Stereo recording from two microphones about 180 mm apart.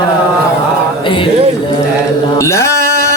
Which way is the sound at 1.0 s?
30° left (ahead or behind).